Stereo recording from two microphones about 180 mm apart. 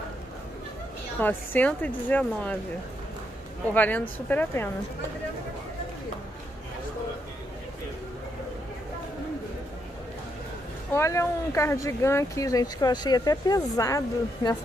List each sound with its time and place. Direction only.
1.2 s speech: 10° left (ahead or behind)
3.7 s speech: 10° left (ahead or behind)
10.9 s speech: 15° left (ahead or behind)